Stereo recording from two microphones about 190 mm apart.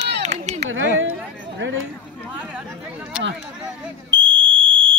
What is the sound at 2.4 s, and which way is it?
Chatter, 5° right (ahead or behind).